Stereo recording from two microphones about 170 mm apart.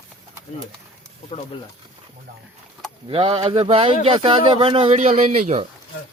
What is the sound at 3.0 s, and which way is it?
Speech, 30° right (ahead or behind).